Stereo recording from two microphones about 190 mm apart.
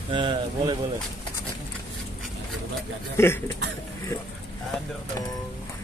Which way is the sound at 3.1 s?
15° left (ahead or behind).